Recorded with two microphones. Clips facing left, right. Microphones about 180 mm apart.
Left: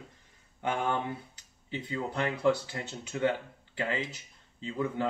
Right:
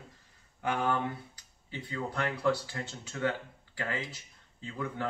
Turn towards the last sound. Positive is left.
turn(degrees=20)  # may be behind; listen again after turning